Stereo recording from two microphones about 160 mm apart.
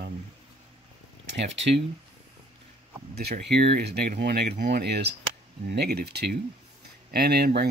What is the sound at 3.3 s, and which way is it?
Speech, 90° right.